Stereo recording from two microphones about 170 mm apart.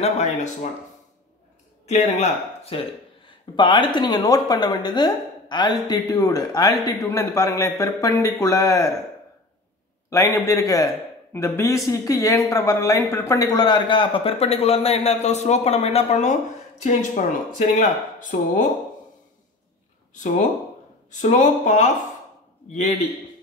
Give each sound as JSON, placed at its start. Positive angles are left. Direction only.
{"t": 0.0, "sound": "speech", "side_deg": 40}
{"t": 1.9, "sound": "a woman's voice", "side_deg": 40}
{"t": 10.0, "sound": "a woman's voice", "side_deg": 20}
{"t": 21.1, "sound": "speech", "side_deg": 45}